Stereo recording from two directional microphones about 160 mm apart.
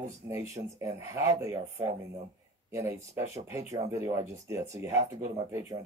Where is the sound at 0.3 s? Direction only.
20° right (ahead or behind).